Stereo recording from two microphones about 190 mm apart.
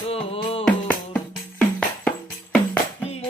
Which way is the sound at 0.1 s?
30° left (ahead or behind).